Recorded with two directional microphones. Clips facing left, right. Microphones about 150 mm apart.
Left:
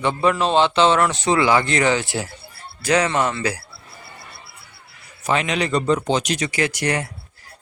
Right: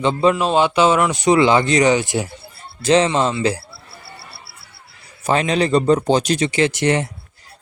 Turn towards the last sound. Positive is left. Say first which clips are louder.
# right 5 dB
turn(degrees=-25)  # may be behind; listen again after turning